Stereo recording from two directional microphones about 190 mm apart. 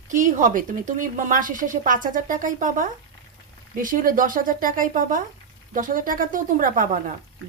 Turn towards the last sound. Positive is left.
turn(degrees=-40)  # may be behind; listen again after turning